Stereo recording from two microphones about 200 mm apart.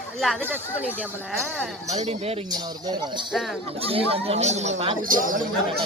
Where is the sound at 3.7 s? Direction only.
30° right (ahead or behind).